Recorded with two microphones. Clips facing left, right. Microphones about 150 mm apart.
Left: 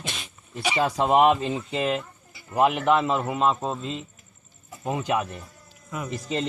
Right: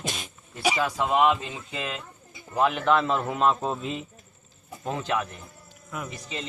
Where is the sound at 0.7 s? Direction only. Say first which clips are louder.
Left 5 dB; 40° left (ahead or behind).